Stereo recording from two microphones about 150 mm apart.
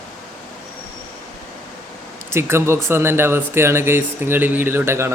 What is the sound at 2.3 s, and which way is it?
Speech, 15° right (ahead or behind).